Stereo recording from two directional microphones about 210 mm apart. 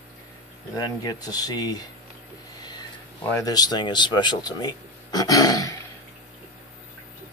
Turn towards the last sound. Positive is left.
turn(degrees=15)  # may be behind; listen again after turning